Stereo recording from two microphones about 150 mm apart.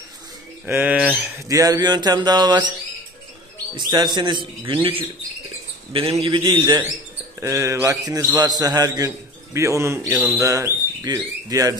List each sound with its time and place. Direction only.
0.7 s speech: 10° right (ahead or behind)
1.5 s a man's voice: 25° right (ahead or behind)
3.7 s a man's voice: 30° right (ahead or behind)
5.9 s a man's voice: 40° right (ahead or behind)
7.3 s a man's voice: 20° right (ahead or behind)